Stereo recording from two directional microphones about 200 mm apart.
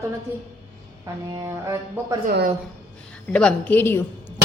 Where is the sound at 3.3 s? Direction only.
5° left (ahead or behind).